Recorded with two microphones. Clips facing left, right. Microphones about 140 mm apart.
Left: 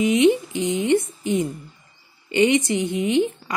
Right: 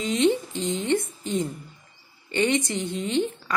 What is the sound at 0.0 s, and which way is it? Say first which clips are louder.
A woman's voice: left 5 dB; 15° left (ahead or behind).